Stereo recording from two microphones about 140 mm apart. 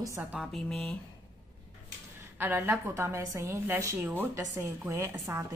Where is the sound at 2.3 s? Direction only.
15° right (ahead or behind).